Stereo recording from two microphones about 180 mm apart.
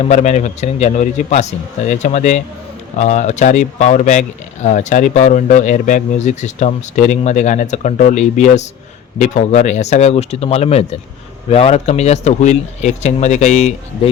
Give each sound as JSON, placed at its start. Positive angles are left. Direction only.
{"t": 0.0, "sound": "speech", "side_deg": 40}